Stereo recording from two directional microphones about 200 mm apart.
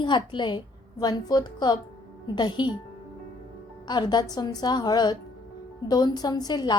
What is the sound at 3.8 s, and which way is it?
A woman's voice, 20° left (ahead or behind).